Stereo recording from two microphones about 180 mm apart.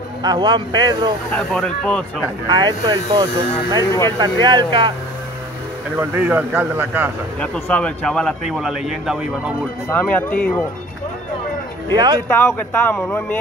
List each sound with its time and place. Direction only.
0.2 s speech: 25° right (ahead or behind)
1.3 s speech: 5° left (ahead or behind)
2.4 s speech: 25° right (ahead or behind)
5.9 s speech: 10° right (ahead or behind)
7.3 s speech: 5° left (ahead or behind)
9.8 s speech: 10° left (ahead or behind)
11.9 s speech: 25° right (ahead or behind)
12.3 s speech: 15° left (ahead or behind)